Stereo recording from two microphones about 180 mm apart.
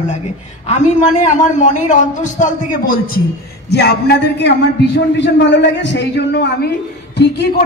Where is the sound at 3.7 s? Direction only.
70° left (ahead or behind).